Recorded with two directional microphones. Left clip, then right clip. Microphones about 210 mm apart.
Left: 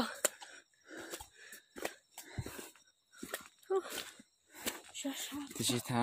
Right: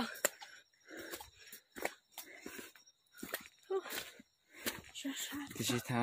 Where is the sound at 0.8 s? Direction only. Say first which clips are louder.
Left 1 dB; 5° left (ahead or behind).